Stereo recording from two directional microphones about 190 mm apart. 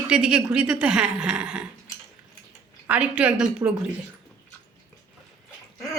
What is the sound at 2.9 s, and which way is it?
Speech, 5° right (ahead or behind).